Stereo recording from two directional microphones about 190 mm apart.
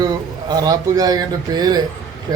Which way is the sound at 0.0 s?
20° right (ahead or behind).